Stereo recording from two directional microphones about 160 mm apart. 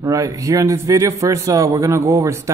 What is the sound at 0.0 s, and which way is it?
A man's voice, 20° right (ahead or behind).